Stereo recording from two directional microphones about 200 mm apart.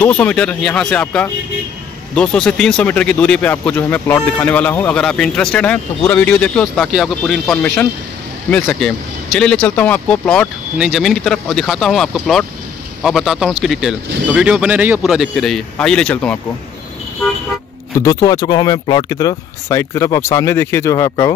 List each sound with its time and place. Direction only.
0.0 s speech: 5° left (ahead or behind)
17.9 s speech: 15° left (ahead or behind)